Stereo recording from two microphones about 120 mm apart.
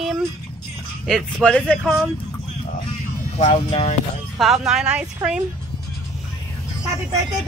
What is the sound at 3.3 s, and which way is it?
Speech, 60° left (ahead or behind).